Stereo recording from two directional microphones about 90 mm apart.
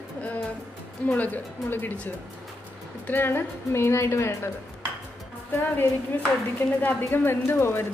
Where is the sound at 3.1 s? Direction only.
25° left (ahead or behind).